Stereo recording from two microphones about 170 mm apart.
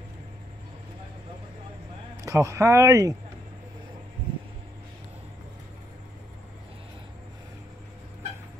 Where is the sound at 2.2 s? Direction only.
20° right (ahead or behind).